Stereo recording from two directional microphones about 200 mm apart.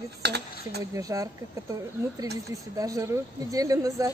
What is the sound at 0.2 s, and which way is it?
Speech, 55° right (ahead or behind).